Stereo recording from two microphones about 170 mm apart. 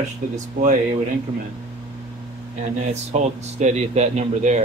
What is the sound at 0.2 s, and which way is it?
Speech, 50° right (ahead or behind).